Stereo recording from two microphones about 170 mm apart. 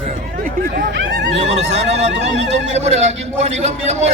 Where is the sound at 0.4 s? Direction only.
55° right (ahead or behind); by 1.4 s 90° right.